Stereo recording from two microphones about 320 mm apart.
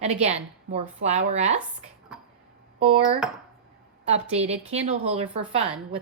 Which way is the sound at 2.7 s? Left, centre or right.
Centre.